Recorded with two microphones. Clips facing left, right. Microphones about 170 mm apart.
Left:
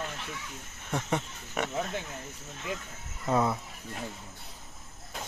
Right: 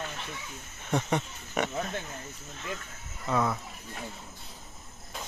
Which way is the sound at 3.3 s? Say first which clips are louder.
Left 1 dB; 25° left (ahead or behind).